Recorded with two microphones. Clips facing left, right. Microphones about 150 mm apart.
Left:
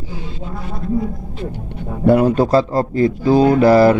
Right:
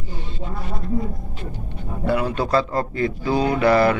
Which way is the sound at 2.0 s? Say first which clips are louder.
Left 9 dB; 45° left (ahead or behind).